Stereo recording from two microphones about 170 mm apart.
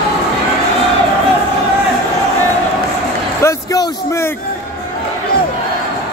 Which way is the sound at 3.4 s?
20° left (ahead or behind).